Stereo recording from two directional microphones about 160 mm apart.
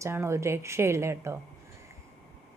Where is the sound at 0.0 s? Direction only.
15° right (ahead or behind).